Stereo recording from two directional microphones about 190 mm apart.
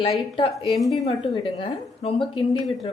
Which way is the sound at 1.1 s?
25° left (ahead or behind).